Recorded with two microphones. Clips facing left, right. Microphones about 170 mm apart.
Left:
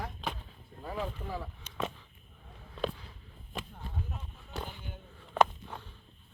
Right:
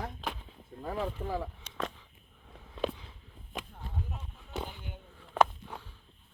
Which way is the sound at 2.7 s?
20° right (ahead or behind).